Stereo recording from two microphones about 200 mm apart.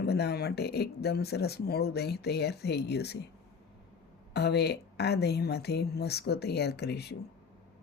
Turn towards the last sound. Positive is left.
turn(degrees=55)  # may be behind; listen again after turning